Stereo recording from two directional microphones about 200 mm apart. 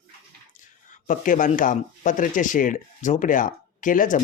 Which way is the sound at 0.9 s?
40° left (ahead or behind).